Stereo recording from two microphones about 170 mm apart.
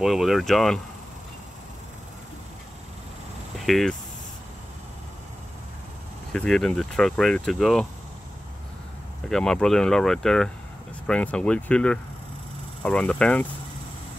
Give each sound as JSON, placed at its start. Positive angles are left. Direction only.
{"t": 0.0, "sound": "speech", "side_deg": 0}
{"t": 3.5, "sound": "a sound", "side_deg": 0}
{"t": 6.3, "sound": "speech", "side_deg": 5}
{"t": 9.3, "sound": "speech", "side_deg": 5}